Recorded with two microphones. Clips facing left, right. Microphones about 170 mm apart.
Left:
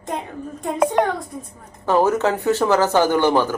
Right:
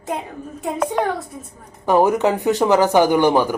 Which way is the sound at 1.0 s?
5° left (ahead or behind).